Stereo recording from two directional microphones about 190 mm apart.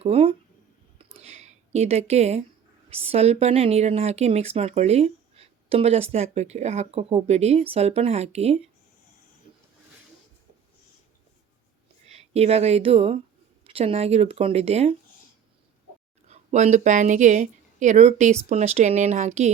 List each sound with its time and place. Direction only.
0.0 s speech: 30° right (ahead or behind)
0.9 s a sound: 30° right (ahead or behind)
2.9 s speech: 30° right (ahead or behind)
12.0 s speech: 35° right (ahead or behind)
16.3 s a woman's voice: 35° right (ahead or behind)